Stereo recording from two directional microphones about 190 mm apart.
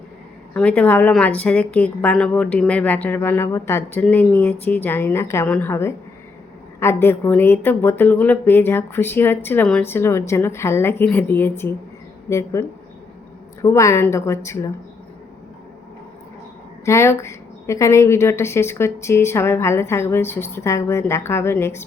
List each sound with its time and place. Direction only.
0.5 s a woman's voice: 10° left (ahead or behind)
16.8 s a woman's voice: 15° left (ahead or behind)